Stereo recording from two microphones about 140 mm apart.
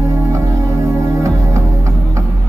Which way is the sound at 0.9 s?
20° right (ahead or behind).